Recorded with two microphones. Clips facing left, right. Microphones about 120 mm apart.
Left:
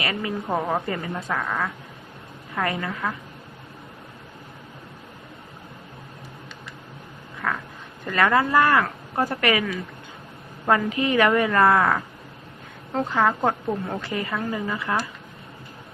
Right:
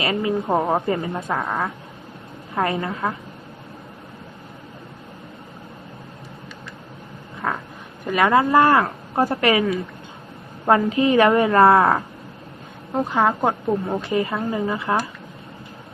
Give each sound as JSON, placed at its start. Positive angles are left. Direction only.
{"t": 0.0, "sound": "speech", "side_deg": -25}
{"t": 7.4, "sound": "a sound", "side_deg": -15}
{"t": 8.0, "sound": "speech", "side_deg": -20}
{"t": 12.9, "sound": "a woman's voice", "side_deg": -15}